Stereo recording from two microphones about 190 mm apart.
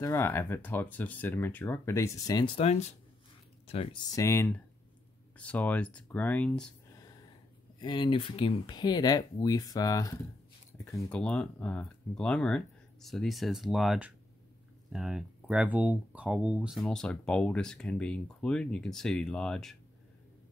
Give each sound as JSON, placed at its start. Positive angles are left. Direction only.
{"t": 0.0, "sound": "speech", "side_deg": 15}
{"t": 7.8, "sound": "speech", "side_deg": 25}